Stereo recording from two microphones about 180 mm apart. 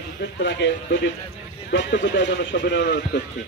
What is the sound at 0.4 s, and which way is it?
Speech, 80° left.